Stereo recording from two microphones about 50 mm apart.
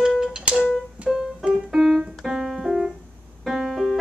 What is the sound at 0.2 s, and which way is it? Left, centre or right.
Music, centre.